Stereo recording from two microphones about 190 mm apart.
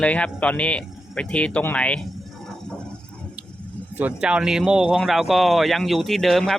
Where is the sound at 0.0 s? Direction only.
5° left (ahead or behind).